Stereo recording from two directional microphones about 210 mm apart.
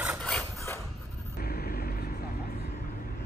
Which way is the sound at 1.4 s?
45° left (ahead or behind).